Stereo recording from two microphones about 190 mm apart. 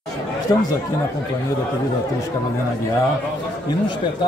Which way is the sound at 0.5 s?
20° left (ahead or behind).